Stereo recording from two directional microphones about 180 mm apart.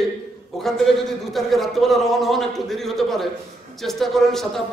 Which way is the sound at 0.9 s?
Centre (ahead or behind).